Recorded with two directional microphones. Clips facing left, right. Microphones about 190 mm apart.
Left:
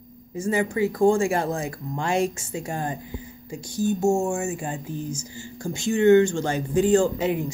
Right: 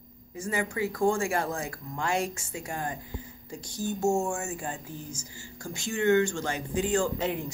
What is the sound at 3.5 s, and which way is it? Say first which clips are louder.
A man's voice: left 8 dB; 10° left (ahead or behind).